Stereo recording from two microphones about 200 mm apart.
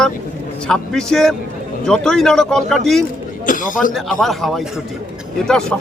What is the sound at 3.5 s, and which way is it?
Speech, 40° left (ahead or behind).